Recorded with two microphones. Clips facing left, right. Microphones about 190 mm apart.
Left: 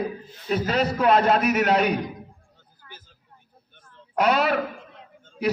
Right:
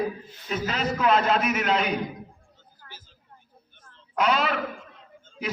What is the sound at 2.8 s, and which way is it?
Vehicle, 50° right (ahead or behind).